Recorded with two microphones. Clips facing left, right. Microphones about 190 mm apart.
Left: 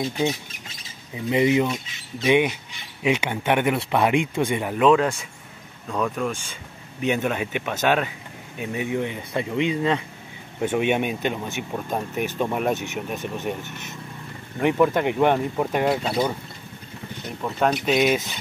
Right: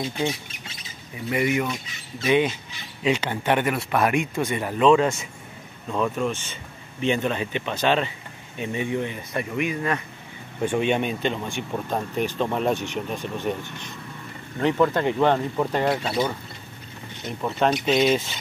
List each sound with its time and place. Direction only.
1.1 s speech: 20° left (ahead or behind); by 6.3 s centre (ahead or behind)
7.0 s speech: 10° left (ahead or behind)
10.6 s speech: 10° left (ahead or behind)
13.2 s speech: 20° left (ahead or behind)
17.4 s speech: centre (ahead or behind)
17.8 s speech: 10° left (ahead or behind)